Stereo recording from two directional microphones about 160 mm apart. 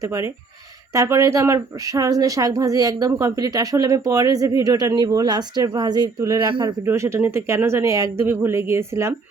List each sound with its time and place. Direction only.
0.0 s speech: 20° right (ahead or behind)
6.8 s speech: 15° right (ahead or behind)